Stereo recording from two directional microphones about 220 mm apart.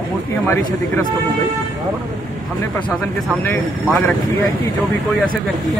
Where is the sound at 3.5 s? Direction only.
10° left (ahead or behind).